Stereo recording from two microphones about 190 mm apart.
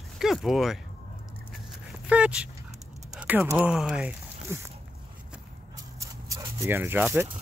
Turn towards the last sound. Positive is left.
turn(degrees=-10)  # may be behind; listen again after turning